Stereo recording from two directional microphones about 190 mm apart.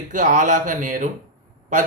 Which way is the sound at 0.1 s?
40° right (ahead or behind).